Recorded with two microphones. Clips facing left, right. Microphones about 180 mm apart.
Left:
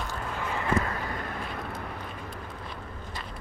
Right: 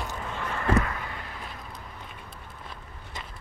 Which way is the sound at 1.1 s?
50° left (ahead or behind).